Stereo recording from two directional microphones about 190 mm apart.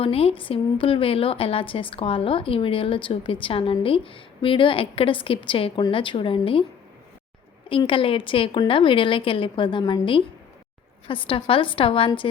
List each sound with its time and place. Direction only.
0.0 s a woman's voice: 30° left (ahead or behind)
7.7 s a woman's voice: 25° left (ahead or behind)